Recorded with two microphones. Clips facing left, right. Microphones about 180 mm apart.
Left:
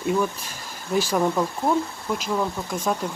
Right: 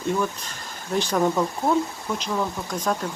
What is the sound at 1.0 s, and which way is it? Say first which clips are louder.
Speech: even; 5° left (ahead or behind).